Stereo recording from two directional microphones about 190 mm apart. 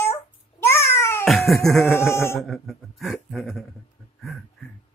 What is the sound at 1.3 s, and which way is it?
Music, centre (ahead or behind).